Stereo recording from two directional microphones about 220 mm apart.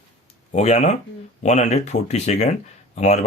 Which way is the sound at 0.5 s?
30° left (ahead or behind).